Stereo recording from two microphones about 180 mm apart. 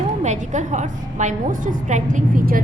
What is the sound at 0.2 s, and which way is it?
A woman's voice, 40° right (ahead or behind).